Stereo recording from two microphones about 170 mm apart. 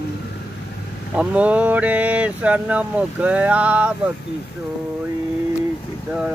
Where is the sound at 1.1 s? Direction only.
10° right (ahead or behind).